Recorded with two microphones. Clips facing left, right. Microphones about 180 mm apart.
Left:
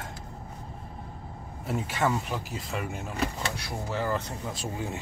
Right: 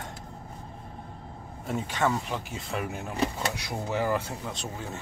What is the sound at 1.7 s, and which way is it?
Speech, 5° left (ahead or behind).